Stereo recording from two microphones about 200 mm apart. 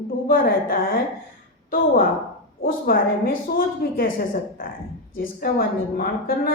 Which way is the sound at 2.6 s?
45° left (ahead or behind).